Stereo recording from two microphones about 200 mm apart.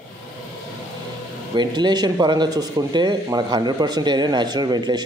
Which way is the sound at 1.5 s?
20° right (ahead or behind).